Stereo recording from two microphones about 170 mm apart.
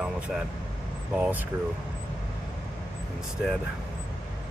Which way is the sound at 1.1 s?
10° right (ahead or behind).